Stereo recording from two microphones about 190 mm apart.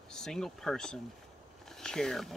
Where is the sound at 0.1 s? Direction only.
5° left (ahead or behind).